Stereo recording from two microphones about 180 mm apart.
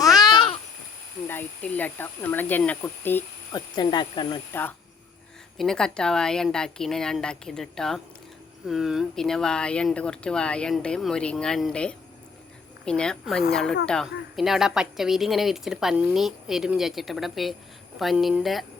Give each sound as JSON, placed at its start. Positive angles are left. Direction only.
{"t": 0.0, "sound": "babbling", "side_deg": 20}
{"t": 1.3, "sound": "speech", "side_deg": 10}
{"t": 3.5, "sound": "speech", "side_deg": 25}
{"t": 5.5, "sound": "speech", "side_deg": 5}